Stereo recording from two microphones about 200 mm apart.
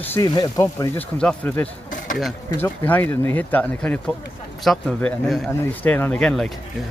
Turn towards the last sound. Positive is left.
turn(degrees=5)  # may be behind; listen again after turning